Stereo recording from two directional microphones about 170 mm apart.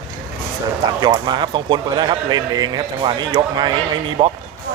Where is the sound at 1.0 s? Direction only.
25° right (ahead or behind).